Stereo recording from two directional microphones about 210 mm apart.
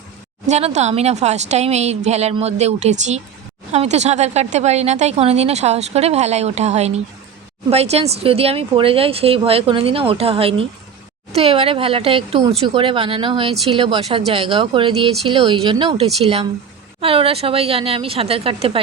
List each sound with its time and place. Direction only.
0.4 s speech: 30° right (ahead or behind)